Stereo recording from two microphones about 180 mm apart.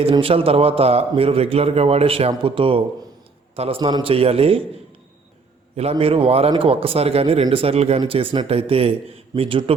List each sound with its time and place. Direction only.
0.0 s a man's voice: 30° right (ahead or behind)
5.7 s a man's voice: 35° right (ahead or behind)